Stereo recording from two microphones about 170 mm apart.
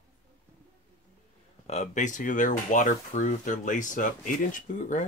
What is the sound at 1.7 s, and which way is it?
Speech, 45° left (ahead or behind).